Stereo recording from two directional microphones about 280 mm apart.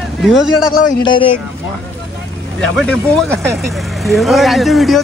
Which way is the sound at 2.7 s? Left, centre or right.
Centre.